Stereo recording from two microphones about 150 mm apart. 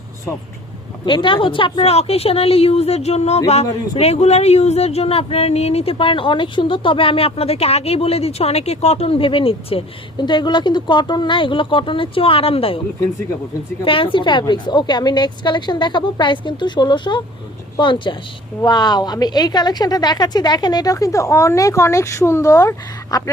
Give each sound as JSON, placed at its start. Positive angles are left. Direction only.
{"t": 1.0, "sound": "a woman's voice", "side_deg": 35}
{"t": 13.8, "sound": "a woman's voice", "side_deg": 35}